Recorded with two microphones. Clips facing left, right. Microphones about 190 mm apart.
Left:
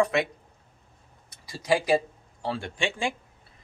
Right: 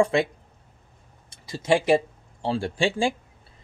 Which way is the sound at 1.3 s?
25° right (ahead or behind).